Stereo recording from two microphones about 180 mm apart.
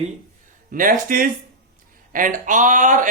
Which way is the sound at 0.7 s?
50° right (ahead or behind).